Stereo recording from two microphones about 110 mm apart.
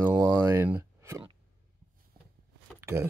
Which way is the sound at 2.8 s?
25° right (ahead or behind).